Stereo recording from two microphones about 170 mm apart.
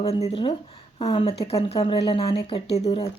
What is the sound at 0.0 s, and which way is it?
Speech, 40° left (ahead or behind).